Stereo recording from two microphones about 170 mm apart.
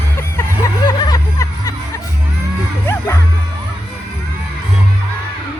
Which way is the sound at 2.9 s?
20° left (ahead or behind).